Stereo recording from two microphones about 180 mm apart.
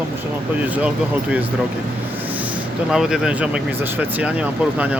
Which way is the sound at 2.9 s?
5° right (ahead or behind).